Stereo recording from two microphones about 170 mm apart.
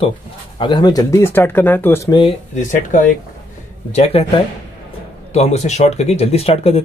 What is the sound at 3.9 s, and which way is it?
Speech, 35° left (ahead or behind).